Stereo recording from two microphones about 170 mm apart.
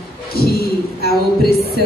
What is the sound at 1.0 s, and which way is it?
Speech, 65° left (ahead or behind).